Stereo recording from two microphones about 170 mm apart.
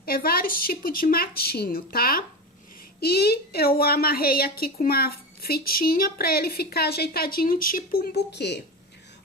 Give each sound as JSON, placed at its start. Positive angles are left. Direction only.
{"t": 0.0, "sound": "a woman's voice", "side_deg": 60}